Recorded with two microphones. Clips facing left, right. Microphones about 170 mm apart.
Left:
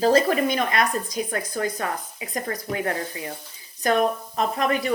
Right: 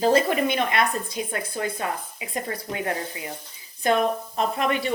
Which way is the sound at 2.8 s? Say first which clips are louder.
Left 1 dB; 20° right (ahead or behind).